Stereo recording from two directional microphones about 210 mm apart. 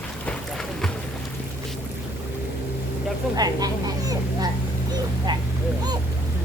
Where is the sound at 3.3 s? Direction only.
20° right (ahead or behind).